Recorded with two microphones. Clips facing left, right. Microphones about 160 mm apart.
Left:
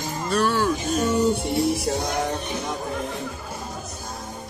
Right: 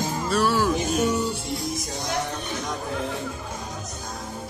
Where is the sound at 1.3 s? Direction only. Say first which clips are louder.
Left 8 dB; 60° left (ahead or behind).